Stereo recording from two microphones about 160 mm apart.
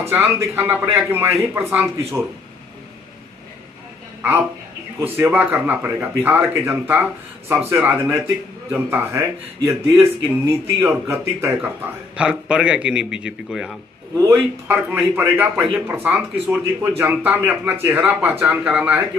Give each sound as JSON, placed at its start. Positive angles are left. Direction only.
{"t": 0.0, "sound": "speech", "side_deg": -15}
{"t": 5.0, "sound": "speech", "side_deg": -15}
{"t": 14.7, "sound": "speech", "side_deg": -15}